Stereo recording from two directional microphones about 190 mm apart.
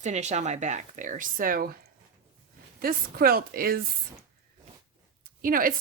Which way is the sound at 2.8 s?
50° right (ahead or behind).